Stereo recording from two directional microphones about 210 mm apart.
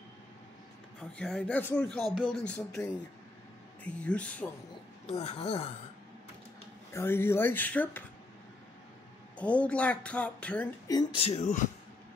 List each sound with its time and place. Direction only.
1.1 s speech: 5° left (ahead or behind)
3.8 s speech: 5° left (ahead or behind)
5.0 s speech: 30° left (ahead or behind)
6.9 s speech: 10° left (ahead or behind)
9.4 s speech: 5° left (ahead or behind)
10.9 s speech: 20° left (ahead or behind)